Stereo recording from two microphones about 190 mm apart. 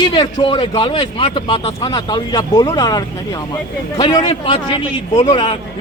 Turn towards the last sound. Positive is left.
turn(degrees=25)  # may be behind; listen again after turning